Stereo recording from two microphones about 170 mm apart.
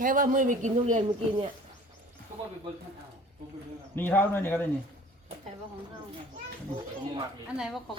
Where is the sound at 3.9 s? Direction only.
10° left (ahead or behind).